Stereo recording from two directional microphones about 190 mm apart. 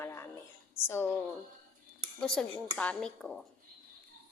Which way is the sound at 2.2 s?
5° left (ahead or behind).